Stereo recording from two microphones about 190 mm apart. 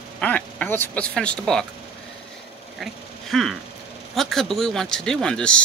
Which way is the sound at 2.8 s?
Centre (ahead or behind).